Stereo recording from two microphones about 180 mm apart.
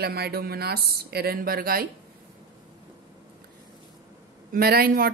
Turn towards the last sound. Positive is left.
turn(degrees=-55)  # may be behind; listen again after turning